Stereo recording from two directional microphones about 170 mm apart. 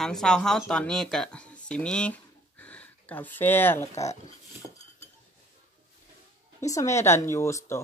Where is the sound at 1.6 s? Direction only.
5° left (ahead or behind).